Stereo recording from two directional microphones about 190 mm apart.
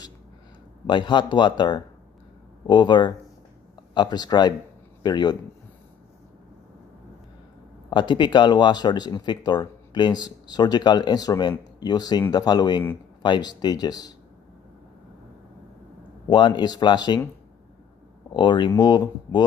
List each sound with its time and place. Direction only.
0.8 s speech: 25° left (ahead or behind)
7.9 s speech: 25° left (ahead or behind)
16.3 s speech: 25° left (ahead or behind)
18.3 s speech: 25° left (ahead or behind)